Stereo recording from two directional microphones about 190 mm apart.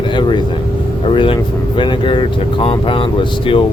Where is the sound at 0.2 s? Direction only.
25° left (ahead or behind).